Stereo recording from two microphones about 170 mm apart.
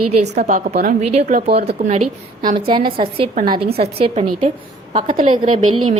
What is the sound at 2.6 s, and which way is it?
A woman's voice, 30° right (ahead or behind).